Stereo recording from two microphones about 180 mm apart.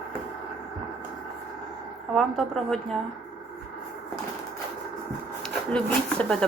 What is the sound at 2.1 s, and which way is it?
Speech, centre (ahead or behind).